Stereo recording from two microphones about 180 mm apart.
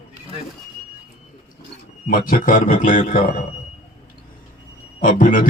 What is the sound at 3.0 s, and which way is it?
Speech, 40° left (ahead or behind).